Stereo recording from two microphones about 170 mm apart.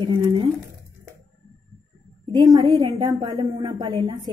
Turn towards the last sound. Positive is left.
turn(degrees=-25)  # may be behind; listen again after turning